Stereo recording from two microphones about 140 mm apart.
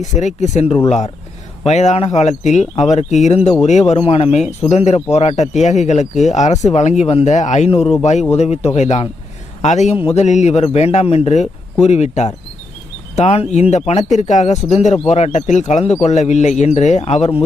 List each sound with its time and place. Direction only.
0.0 s a man's voice: 60° left (ahead or behind)
7.7 s a man's voice: 45° left (ahead or behind)
8.0 s a man's voice: 55° left (ahead or behind)